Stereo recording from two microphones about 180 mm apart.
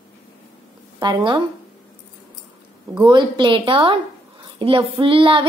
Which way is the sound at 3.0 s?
25° right (ahead or behind).